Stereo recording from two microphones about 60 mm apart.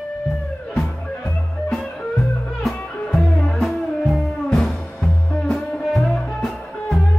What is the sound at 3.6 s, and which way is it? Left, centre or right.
Music, centre.